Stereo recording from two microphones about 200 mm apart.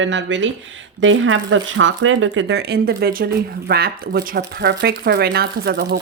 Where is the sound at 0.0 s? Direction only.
65° right (ahead or behind).